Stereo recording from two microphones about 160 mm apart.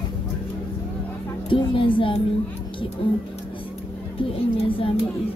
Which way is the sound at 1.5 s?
35° left (ahead or behind).